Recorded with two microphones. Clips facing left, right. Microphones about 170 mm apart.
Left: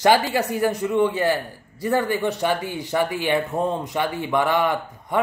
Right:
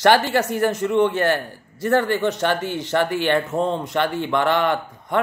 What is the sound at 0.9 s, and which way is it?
A man's voice, 70° right (ahead or behind).